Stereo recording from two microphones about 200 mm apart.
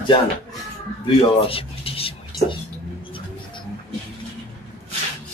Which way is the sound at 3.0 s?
25° left (ahead or behind).